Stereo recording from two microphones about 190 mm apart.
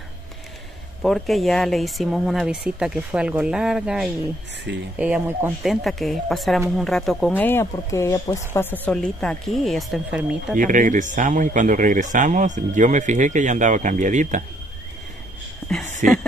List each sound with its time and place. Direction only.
1.0 s speech: centre (ahead or behind)
10.5 s speech: 45° right (ahead or behind)
16.0 s a sound: 45° right (ahead or behind)